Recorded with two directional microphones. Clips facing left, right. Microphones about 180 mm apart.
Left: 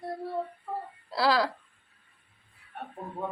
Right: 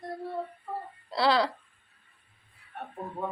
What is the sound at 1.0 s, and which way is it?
Speech, 5° left (ahead or behind).